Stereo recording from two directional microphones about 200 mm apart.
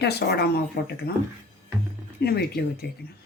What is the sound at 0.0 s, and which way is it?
Speech, 55° left (ahead or behind).